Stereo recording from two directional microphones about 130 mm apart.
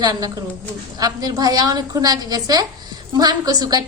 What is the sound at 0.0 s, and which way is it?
A woman's voice, 30° right (ahead or behind).